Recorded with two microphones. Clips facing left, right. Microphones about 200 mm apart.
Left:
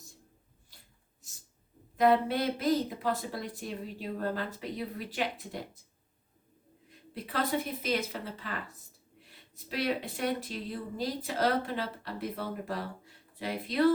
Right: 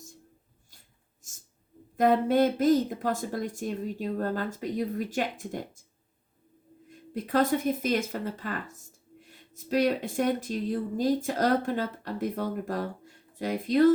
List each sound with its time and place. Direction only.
1.2 s a sound: 45° right (ahead or behind)
2.0 s speech: 45° right (ahead or behind)
7.1 s speech: 45° right (ahead or behind)